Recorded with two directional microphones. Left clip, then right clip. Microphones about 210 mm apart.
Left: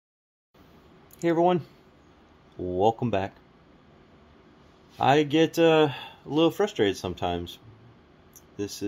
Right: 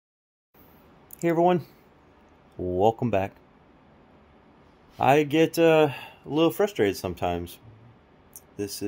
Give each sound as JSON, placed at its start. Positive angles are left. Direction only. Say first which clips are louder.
{"t": 1.2, "sound": "speech", "louder": "right 1 dB", "side_deg": -25}
{"t": 2.7, "sound": "speech", "louder": "right 1 dB", "side_deg": -20}
{"t": 4.9, "sound": "speech", "louder": "right 1 dB", "side_deg": -25}
{"t": 8.5, "sound": "speech", "louder": "right 1 dB", "side_deg": -30}